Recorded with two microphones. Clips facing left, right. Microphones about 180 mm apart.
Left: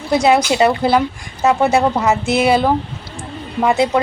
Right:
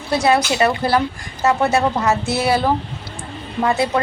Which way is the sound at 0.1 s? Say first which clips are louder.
Left 3 dB; 20° left (ahead or behind).